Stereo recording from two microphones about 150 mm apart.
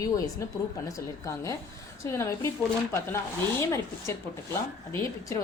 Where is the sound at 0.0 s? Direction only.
20° left (ahead or behind).